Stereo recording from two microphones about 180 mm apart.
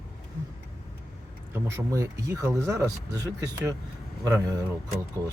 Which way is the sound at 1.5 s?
20° right (ahead or behind).